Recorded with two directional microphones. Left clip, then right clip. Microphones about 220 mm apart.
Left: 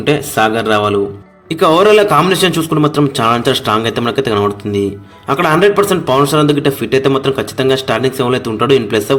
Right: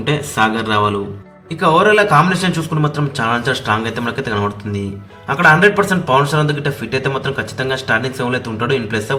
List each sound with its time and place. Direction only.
0.0 s speech: 30° left (ahead or behind)
1.5 s speech: 40° left (ahead or behind)